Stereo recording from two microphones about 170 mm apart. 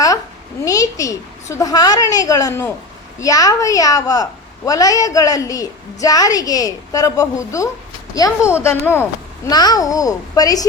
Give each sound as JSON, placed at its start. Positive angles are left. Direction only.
{"t": 0.6, "sound": "a woman's voice", "side_deg": 20}